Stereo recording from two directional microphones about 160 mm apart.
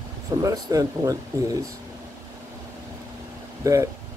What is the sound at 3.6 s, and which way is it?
Speech, 20° right (ahead or behind).